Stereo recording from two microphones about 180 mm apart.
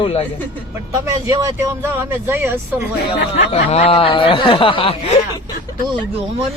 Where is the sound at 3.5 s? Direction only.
35° left (ahead or behind).